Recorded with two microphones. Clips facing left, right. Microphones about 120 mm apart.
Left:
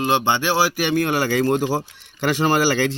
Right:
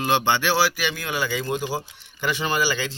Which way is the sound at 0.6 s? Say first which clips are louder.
Left 5 dB; 50° left (ahead or behind).